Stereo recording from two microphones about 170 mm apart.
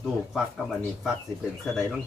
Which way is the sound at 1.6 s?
Centre (ahead or behind).